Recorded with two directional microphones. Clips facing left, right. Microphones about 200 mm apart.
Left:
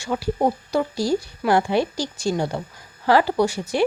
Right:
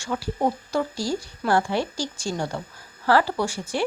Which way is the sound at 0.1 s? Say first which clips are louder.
Left 3 dB; 20° left (ahead or behind).